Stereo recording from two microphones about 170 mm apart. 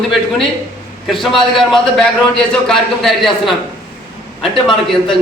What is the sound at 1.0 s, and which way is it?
A man's voice, centre (ahead or behind).